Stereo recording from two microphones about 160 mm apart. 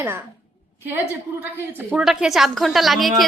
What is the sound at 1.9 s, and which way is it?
A woman's voice, 5° right (ahead or behind).